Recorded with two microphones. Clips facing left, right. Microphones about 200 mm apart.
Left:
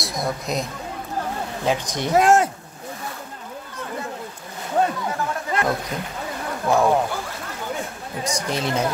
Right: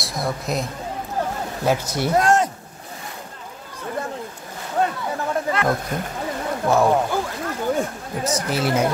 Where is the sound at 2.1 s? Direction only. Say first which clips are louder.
Left 2 dB; 5° left (ahead or behind).